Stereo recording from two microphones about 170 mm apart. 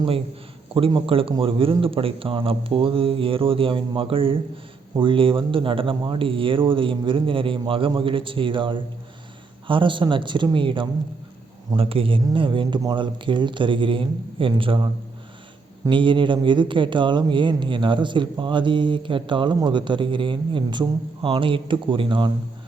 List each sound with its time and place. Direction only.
0.7 s speech: 30° right (ahead or behind)